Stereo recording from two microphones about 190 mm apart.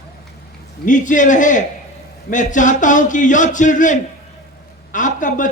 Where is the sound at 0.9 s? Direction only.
40° left (ahead or behind).